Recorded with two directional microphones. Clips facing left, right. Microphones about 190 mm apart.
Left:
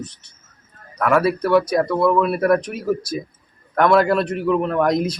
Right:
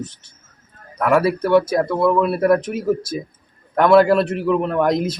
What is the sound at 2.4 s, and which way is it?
Speech, 25° right (ahead or behind).